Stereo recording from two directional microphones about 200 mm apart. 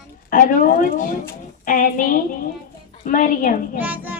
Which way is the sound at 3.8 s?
10° right (ahead or behind).